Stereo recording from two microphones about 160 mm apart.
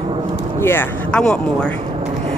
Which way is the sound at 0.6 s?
15° left (ahead or behind).